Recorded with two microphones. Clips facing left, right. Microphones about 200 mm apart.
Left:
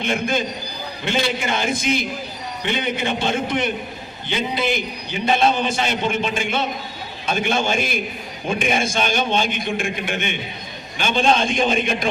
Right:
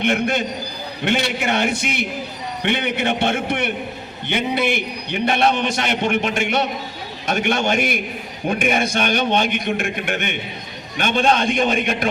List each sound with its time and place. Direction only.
0.0 s a man's voice: 65° right (ahead or behind)